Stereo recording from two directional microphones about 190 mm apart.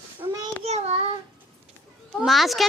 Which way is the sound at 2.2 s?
Centre (ahead or behind).